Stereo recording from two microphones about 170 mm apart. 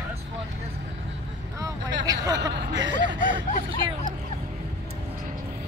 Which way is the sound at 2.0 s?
20° right (ahead or behind).